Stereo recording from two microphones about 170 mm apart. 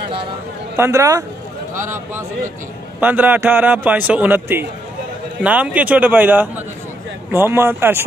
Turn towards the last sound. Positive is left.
turn(degrees=-15)  # may be behind; listen again after turning